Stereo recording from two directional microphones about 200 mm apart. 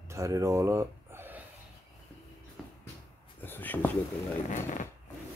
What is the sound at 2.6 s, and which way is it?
Music, centre (ahead or behind).